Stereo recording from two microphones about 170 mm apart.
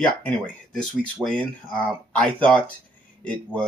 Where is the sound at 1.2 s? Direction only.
5° left (ahead or behind).